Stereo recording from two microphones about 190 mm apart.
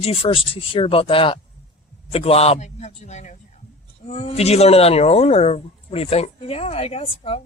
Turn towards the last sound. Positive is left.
turn(degrees=30)  # may be behind; listen again after turning